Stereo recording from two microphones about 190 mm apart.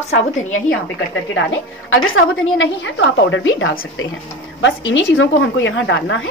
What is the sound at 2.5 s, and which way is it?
Speech, 75° left (ahead or behind).